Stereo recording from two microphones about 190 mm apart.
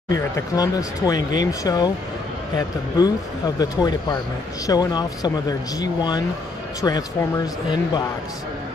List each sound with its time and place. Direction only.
0.1 s a man's voice: 20° left (ahead or behind)